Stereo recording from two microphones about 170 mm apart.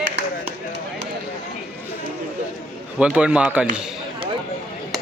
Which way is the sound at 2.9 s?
5° right (ahead or behind).